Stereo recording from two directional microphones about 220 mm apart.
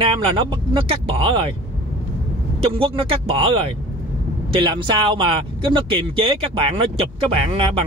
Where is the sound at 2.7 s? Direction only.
25° right (ahead or behind).